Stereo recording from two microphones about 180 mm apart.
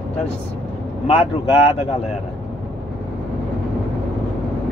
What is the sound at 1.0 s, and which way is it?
Speech, 35° left (ahead or behind).